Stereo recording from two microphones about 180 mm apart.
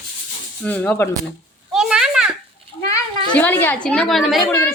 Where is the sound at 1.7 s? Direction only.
5° right (ahead or behind).